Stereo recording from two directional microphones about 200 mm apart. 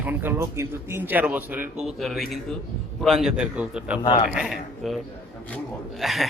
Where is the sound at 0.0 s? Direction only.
10° right (ahead or behind).